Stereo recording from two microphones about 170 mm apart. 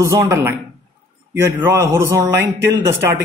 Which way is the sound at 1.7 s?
15° right (ahead or behind).